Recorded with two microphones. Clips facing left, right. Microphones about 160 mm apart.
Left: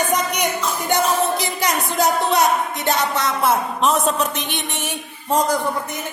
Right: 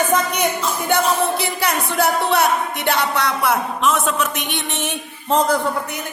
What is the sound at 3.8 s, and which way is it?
Speech, 35° left (ahead or behind).